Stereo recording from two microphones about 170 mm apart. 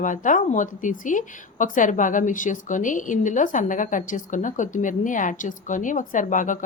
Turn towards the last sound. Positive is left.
turn(degrees=50)  # may be behind; listen again after turning